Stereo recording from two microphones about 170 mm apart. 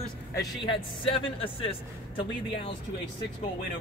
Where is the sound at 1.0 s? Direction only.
35° left (ahead or behind).